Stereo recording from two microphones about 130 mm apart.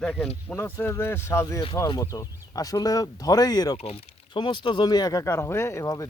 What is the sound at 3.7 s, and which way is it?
Speech, 50° left (ahead or behind).